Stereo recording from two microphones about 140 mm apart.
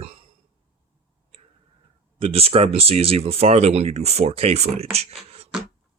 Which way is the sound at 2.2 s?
45° right (ahead or behind).